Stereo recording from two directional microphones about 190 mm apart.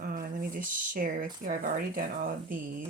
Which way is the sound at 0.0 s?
50° right (ahead or behind).